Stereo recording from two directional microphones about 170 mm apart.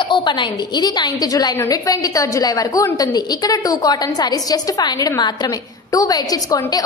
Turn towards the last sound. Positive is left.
turn(degrees=20)  # may be behind; listen again after turning